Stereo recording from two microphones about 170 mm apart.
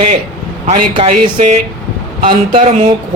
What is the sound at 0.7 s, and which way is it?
Speech, 40° right (ahead or behind).